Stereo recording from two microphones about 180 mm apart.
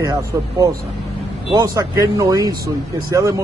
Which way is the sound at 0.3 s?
15° right (ahead or behind).